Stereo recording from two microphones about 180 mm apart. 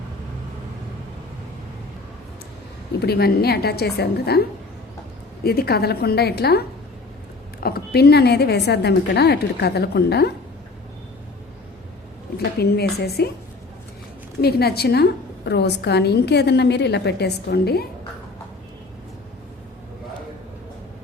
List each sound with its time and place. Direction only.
3.0 s a woman's voice: 60° left (ahead or behind)
7.6 s a woman's voice: 60° left (ahead or behind)
12.4 s a woman's voice: 60° left (ahead or behind)
14.4 s a woman's voice: 60° left (ahead or behind)